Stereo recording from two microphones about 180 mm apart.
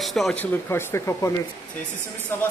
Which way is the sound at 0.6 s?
15° left (ahead or behind).